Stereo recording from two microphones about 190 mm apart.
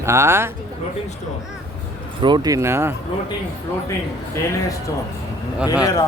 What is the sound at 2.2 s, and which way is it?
Speech, 25° right (ahead or behind).